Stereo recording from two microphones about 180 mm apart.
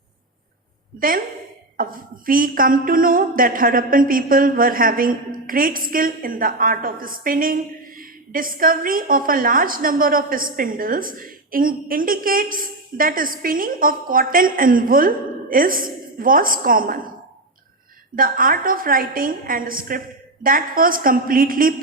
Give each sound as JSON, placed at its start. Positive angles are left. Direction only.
{"t": 0.9, "sound": "speech", "side_deg": -50}
{"t": 18.2, "sound": "speech", "side_deg": -50}